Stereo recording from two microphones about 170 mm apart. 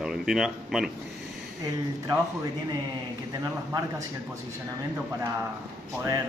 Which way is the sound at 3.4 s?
20° right (ahead or behind).